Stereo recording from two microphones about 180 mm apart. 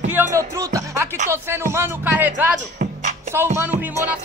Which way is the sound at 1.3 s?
15° right (ahead or behind).